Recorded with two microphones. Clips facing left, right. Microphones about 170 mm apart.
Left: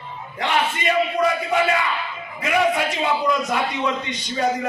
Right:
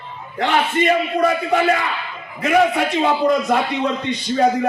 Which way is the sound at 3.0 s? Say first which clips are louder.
Right 6 dB; 55° right (ahead or behind).